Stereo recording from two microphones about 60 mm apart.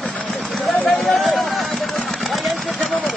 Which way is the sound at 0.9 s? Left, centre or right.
Centre.